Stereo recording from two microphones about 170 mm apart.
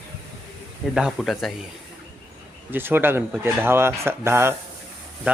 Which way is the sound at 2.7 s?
10° right (ahead or behind).